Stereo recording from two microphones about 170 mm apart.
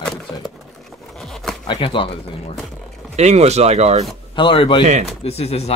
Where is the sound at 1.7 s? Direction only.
30° left (ahead or behind).